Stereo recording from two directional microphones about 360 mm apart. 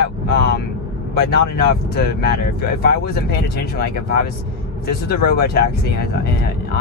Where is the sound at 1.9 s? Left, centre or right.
Left.